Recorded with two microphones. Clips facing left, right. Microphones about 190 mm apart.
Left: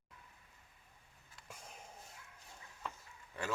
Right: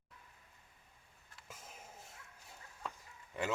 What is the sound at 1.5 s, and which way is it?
Dog, 5° right (ahead or behind).